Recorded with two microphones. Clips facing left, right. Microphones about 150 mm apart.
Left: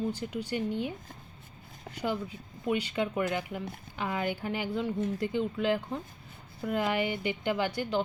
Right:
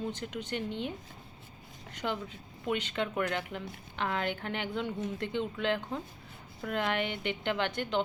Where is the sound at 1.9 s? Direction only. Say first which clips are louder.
Left 3 dB; 10° left (ahead or behind).